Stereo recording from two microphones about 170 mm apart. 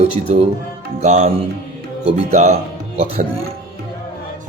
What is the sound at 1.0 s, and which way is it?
Speech, 40° right (ahead or behind).